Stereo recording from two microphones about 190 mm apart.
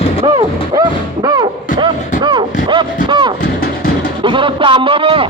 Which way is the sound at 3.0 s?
25° right (ahead or behind).